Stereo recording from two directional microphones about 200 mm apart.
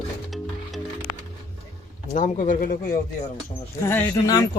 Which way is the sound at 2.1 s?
40° left (ahead or behind).